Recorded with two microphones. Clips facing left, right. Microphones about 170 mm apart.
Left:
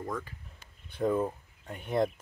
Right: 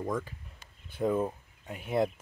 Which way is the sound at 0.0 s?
20° right (ahead or behind).